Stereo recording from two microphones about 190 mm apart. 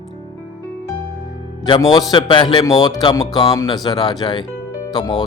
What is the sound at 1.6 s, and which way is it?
Speech, 25° left (ahead or behind).